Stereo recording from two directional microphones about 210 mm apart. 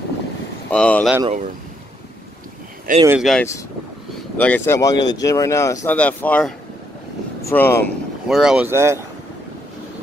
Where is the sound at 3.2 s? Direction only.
Centre (ahead or behind).